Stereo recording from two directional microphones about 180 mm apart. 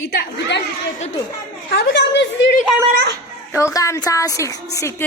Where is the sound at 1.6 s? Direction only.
65° left (ahead or behind).